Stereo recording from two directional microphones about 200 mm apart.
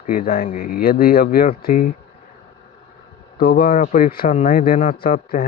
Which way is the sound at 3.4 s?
50° left (ahead or behind).